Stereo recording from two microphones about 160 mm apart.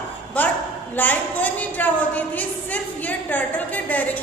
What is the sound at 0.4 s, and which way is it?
A woman's voice, 10° left (ahead or behind).